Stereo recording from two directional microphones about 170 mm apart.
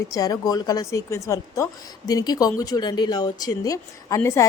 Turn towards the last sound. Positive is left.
turn(degrees=15)  # may be behind; listen again after turning